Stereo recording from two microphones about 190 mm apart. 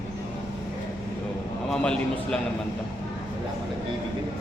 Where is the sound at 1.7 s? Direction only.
5° left (ahead or behind).